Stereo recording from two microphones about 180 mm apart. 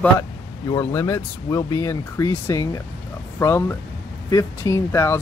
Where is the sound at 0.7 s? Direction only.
15° left (ahead or behind).